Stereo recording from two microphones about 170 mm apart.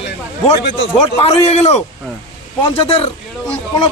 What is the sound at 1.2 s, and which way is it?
Speech, 35° left (ahead or behind).